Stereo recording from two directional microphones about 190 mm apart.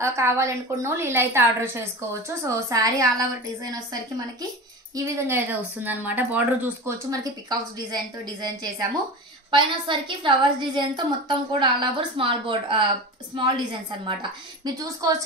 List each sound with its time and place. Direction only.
0.0 s a woman's voice: 15° right (ahead or behind)
7.4 s a woman's voice: 20° right (ahead or behind)
14.6 s a woman's voice: 20° right (ahead or behind)